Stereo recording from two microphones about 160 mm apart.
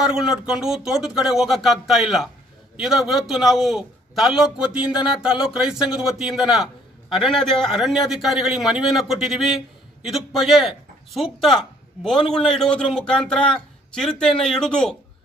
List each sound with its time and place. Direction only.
0.0 s a man's voice: 5° right (ahead or behind)